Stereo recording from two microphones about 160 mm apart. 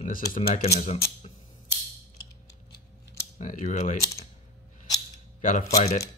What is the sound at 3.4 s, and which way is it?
Speech, 50° left (ahead or behind).